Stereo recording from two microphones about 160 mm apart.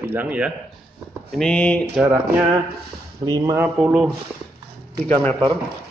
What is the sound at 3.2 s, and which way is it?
Speech, 20° right (ahead or behind).